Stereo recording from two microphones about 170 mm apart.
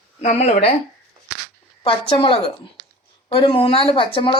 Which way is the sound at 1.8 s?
30° left (ahead or behind).